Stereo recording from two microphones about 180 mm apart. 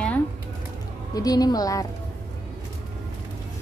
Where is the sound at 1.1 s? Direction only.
20° left (ahead or behind).